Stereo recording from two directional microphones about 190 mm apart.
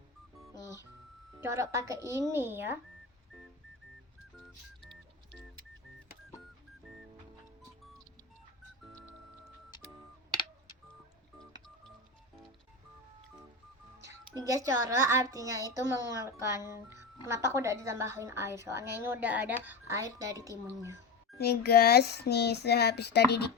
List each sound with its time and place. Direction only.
1.4 s a woman's voice: 15° right (ahead or behind)
14.1 s a woman's voice: 15° right (ahead or behind)
21.3 s speech: 55° left (ahead or behind)